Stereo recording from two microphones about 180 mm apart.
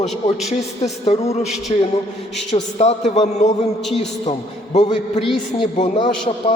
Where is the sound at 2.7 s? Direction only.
35° left (ahead or behind).